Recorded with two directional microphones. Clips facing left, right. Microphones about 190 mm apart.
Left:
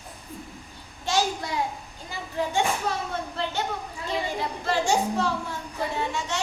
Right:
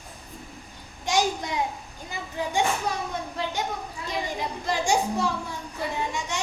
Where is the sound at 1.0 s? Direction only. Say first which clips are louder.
Right 1 dB; 15° right (ahead or behind).